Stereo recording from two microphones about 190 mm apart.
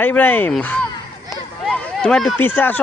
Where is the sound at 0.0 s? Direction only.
10° left (ahead or behind).